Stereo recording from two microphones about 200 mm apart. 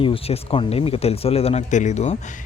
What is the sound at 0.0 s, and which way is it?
A man's voice, 25° left (ahead or behind).